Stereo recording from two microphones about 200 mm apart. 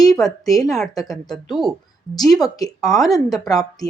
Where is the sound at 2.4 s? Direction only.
20° left (ahead or behind).